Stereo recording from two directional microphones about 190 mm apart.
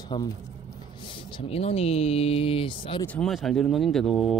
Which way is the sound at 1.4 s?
30° left (ahead or behind).